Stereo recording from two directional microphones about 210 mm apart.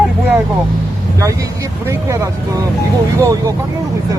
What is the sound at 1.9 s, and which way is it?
Speech, 15° right (ahead or behind).